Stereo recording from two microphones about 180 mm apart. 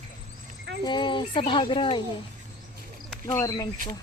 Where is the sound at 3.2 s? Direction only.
15° left (ahead or behind).